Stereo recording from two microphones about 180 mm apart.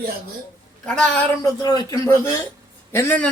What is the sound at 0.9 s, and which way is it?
Speech, 5° left (ahead or behind).